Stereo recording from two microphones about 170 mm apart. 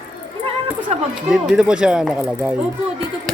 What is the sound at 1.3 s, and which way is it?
Speech, 5° right (ahead or behind).